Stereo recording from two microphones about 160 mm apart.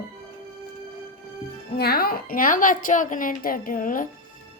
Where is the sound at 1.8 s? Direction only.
75° left (ahead or behind).